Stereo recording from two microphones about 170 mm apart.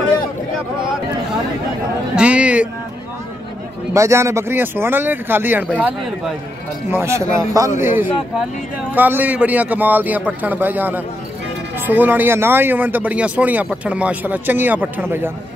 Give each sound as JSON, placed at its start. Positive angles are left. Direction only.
{"t": 2.1, "sound": "music", "side_deg": -5}
{"t": 3.9, "sound": "speech", "side_deg": -15}